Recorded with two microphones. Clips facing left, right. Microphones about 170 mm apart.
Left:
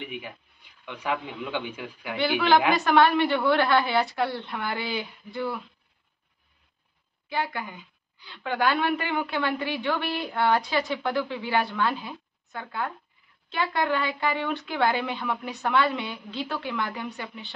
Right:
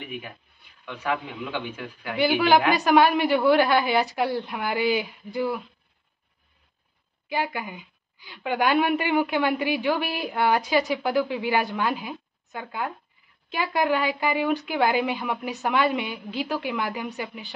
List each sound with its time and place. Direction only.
0.8 s a man's voice: 15° left (ahead or behind)
2.7 s a woman's voice: 15° right (ahead or behind)
7.2 s a woman's voice: 15° right (ahead or behind)